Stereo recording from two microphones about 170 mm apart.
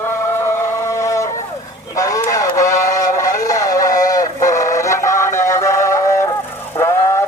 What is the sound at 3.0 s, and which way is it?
Music, 20° left (ahead or behind).